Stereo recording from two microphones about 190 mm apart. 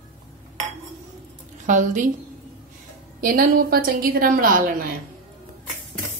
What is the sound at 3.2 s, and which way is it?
A woman's voice, 50° right (ahead or behind).